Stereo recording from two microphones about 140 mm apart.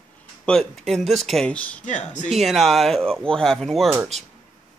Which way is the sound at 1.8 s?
60° left (ahead or behind).